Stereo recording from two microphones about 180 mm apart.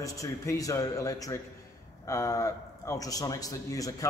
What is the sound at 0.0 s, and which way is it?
A man's voice, 20° left (ahead or behind).